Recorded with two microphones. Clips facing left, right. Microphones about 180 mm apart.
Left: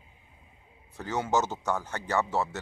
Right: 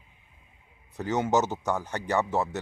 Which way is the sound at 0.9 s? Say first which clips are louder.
Right 3 dB; 20° right (ahead or behind).